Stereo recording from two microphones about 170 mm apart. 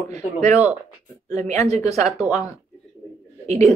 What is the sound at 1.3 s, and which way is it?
Speech, 40° right (ahead or behind).